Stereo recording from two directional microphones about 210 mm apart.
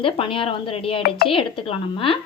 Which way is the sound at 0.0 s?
25° left (ahead or behind).